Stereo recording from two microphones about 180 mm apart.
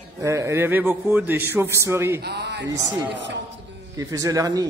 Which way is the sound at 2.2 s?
65° right (ahead or behind).